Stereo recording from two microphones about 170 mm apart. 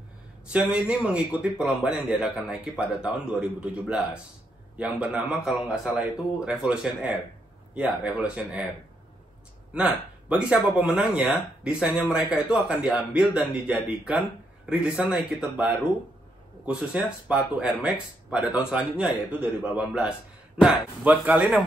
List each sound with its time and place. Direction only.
0.5 s speech: 5° right (ahead or behind)
10.2 s speech: 5° right (ahead or behind)
16.6 s speech: 5° right (ahead or behind)